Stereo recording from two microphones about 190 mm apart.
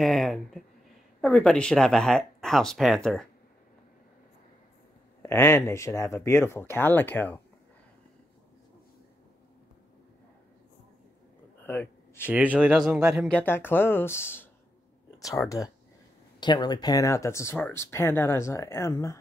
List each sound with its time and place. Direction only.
0.0 s speech: centre (ahead or behind)
5.2 s speech: 15° left (ahead or behind)
11.6 s a sound: 10° left (ahead or behind)
12.3 s speech: 10° right (ahead or behind); by 19.1 s 15° left (ahead or behind)